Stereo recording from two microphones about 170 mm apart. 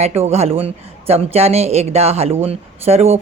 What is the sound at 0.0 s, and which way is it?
A woman's voice, 40° right (ahead or behind).